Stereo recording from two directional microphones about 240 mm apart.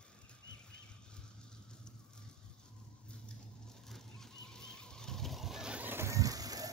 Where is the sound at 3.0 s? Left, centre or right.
Centre.